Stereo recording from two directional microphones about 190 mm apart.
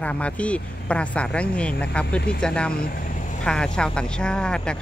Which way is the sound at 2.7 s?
50° left (ahead or behind).